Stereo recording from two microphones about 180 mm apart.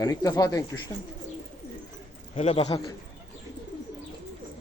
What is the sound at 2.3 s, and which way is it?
Speech, 35° left (ahead or behind).